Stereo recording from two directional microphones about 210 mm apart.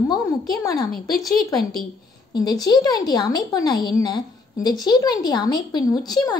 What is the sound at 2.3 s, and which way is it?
Speech, 20° left (ahead or behind).